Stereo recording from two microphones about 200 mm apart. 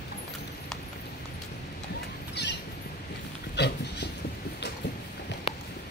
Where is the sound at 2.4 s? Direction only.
55° left (ahead or behind).